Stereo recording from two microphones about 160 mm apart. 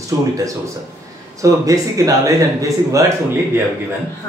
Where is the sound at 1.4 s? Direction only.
20° right (ahead or behind).